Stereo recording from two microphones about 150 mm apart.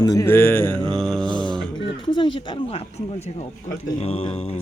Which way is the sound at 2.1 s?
35° left (ahead or behind).